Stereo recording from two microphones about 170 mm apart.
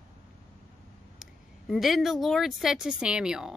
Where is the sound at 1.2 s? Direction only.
Centre (ahead or behind).